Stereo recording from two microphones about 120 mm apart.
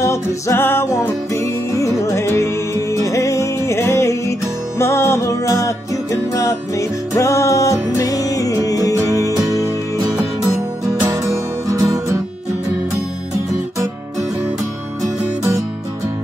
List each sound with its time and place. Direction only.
0.0 s music: 25° left (ahead or behind)
11.6 s music: 30° right (ahead or behind)